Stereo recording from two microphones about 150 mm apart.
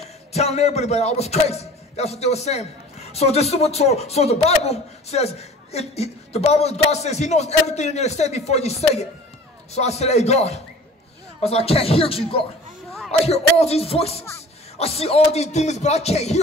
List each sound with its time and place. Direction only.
0.3 s speech: 45° left (ahead or behind)